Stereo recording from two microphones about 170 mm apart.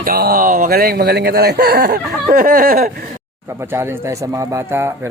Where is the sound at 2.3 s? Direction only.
60° right (ahead or behind).